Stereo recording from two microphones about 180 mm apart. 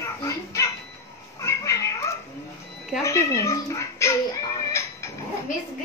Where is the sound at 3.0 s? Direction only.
15° left (ahead or behind).